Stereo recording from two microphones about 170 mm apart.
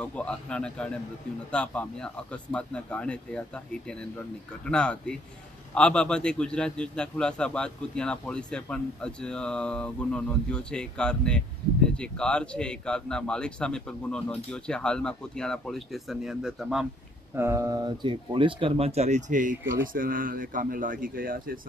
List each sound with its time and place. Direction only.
0.0 s a man's voice: 5° left (ahead or behind)
17.4 s speech: 15° right (ahead or behind); by 21.5 s 55° right (ahead or behind)